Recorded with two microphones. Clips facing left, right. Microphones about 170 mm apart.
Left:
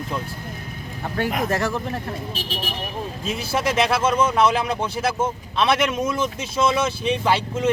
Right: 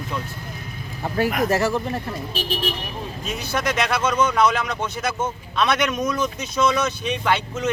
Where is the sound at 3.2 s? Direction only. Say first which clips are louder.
Left 1 dB; 30° left (ahead or behind).